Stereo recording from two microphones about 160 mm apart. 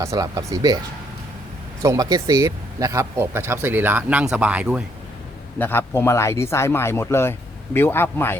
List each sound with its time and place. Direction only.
0.0 s speech: 20° right (ahead or behind)
1.8 s speech: 20° right (ahead or behind)
5.5 s speech: 10° left (ahead or behind)